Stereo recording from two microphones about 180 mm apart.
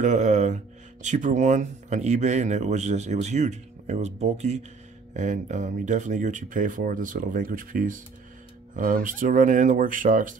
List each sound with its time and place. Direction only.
0.0 s speech: 40° right (ahead or behind)